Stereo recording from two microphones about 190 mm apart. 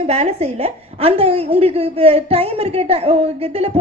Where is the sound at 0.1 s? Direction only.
35° right (ahead or behind).